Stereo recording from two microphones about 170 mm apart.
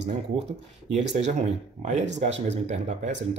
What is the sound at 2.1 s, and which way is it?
Speech, 40° right (ahead or behind).